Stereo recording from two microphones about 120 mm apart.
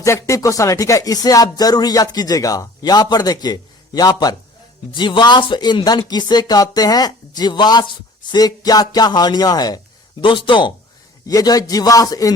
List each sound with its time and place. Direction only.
0.0 s speech: 25° left (ahead or behind); by 10.7 s 40° left (ahead or behind)
11.3 s speech: 30° left (ahead or behind)